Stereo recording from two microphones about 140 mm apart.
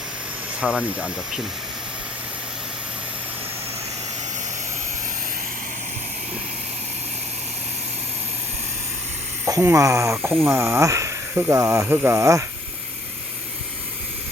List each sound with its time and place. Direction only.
0.6 s speech: 5° right (ahead or behind)
9.5 s speech: 20° right (ahead or behind)